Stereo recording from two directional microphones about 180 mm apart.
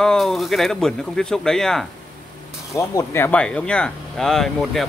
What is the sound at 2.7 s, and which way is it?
Speech, 15° left (ahead or behind).